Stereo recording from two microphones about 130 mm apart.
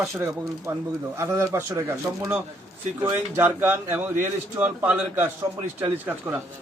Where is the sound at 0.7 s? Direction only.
20° right (ahead or behind).